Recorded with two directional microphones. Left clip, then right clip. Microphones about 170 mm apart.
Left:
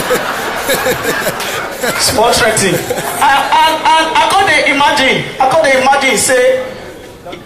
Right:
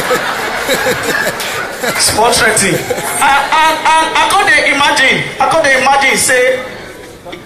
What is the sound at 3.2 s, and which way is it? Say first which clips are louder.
Speech: even; 50° left (ahead or behind).